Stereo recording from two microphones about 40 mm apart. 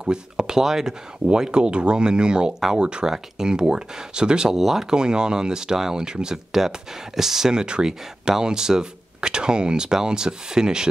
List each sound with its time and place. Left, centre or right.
0.0 s speech: centre
4.6 s speech: centre
4.8 s speech: centre